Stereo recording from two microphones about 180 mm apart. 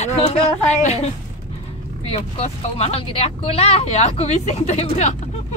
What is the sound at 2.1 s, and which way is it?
Speech, 35° left (ahead or behind).